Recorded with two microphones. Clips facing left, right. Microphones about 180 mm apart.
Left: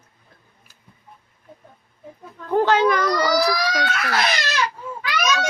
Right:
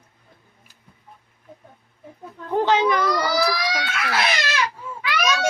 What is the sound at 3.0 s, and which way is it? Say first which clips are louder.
Speech: left 2 dB; 45° left (ahead or behind).